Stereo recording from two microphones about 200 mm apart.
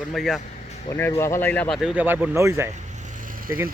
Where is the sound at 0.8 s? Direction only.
10° left (ahead or behind).